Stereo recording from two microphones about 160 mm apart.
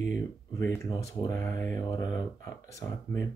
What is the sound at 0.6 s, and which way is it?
Speech, 20° left (ahead or behind).